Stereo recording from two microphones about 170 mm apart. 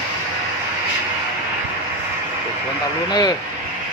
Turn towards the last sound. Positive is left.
turn(degrees=25)  # may be behind; listen again after turning